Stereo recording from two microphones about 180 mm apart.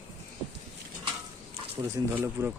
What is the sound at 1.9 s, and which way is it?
Speech, 15° right (ahead or behind).